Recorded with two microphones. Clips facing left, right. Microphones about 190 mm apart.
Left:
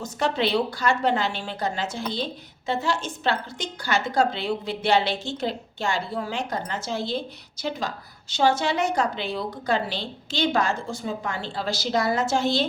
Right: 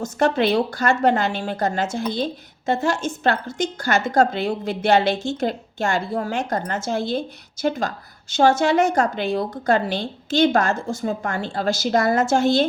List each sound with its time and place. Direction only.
0.0 s a woman's voice: 50° right (ahead or behind)